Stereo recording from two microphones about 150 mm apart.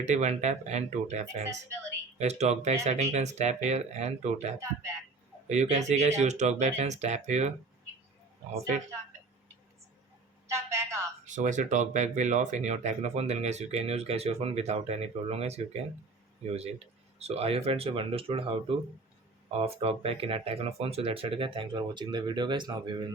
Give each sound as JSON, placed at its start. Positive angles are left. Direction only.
{"t": 0.0, "sound": "speech", "side_deg": -50}
{"t": 10.4, "sound": "telephone", "side_deg": -20}
{"t": 11.3, "sound": "speech", "side_deg": -55}